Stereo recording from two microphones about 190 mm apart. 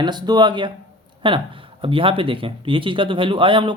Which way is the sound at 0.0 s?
20° right (ahead or behind).